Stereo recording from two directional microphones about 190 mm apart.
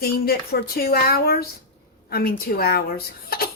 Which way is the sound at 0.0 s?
55° left (ahead or behind).